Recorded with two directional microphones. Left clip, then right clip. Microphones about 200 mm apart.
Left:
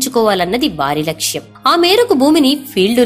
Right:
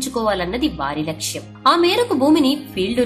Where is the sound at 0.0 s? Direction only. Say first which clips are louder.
Left 7 dB; 40° left (ahead or behind).